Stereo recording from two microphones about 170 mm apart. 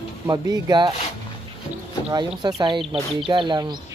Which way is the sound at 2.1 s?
25° right (ahead or behind).